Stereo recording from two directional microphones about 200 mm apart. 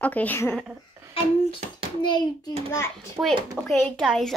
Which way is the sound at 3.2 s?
15° right (ahead or behind).